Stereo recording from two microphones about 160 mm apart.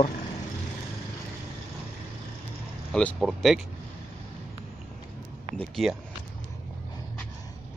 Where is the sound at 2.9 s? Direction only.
5° left (ahead or behind).